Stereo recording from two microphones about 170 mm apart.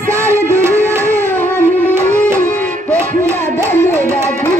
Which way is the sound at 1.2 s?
10° left (ahead or behind).